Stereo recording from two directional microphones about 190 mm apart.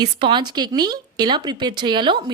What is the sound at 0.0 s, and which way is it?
Speech, 25° right (ahead or behind).